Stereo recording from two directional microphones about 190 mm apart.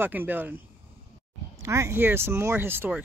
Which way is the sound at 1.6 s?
15° right (ahead or behind).